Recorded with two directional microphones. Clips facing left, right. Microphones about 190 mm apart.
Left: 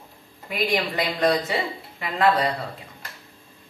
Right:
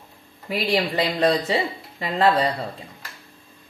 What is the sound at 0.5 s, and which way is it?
Speech, 30° right (ahead or behind).